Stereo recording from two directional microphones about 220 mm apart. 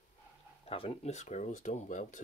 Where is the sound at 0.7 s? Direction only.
25° left (ahead or behind).